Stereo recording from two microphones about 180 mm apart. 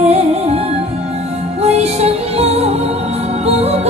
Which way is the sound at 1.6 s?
35° right (ahead or behind).